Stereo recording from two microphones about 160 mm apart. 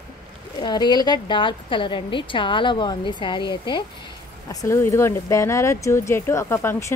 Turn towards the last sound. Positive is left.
turn(degrees=15)  # may be behind; listen again after turning